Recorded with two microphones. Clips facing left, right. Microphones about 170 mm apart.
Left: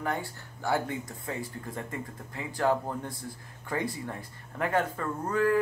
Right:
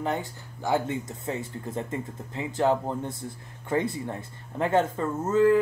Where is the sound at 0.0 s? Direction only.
20° right (ahead or behind).